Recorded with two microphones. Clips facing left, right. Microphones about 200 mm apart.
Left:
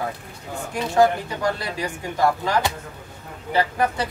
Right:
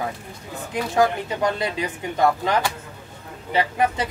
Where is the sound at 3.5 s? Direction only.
20° right (ahead or behind).